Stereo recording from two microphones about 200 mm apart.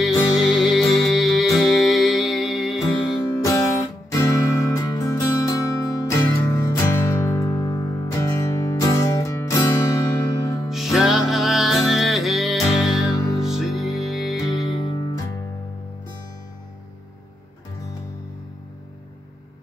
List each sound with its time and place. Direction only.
0.0 s music: centre (ahead or behind)
3.2 s music: 15° left (ahead or behind)
10.7 s music: centre (ahead or behind)